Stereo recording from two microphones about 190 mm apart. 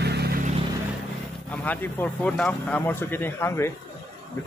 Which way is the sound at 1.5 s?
10° left (ahead or behind).